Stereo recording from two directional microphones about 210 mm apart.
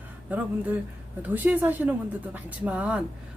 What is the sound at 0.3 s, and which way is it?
A woman's voice, 10° right (ahead or behind).